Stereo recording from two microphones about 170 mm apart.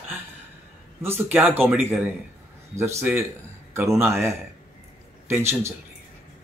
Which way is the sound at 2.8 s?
15° right (ahead or behind).